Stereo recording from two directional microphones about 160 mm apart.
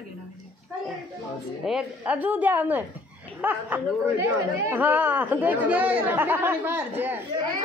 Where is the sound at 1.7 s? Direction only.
5° right (ahead or behind).